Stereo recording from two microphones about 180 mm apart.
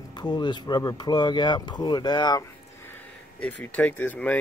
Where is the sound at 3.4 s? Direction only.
5° left (ahead or behind).